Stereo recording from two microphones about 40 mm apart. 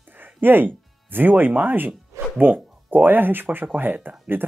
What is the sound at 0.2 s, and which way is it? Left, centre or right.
Music, right.